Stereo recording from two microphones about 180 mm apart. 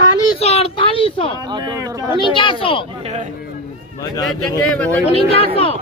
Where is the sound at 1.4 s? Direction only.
25° right (ahead or behind).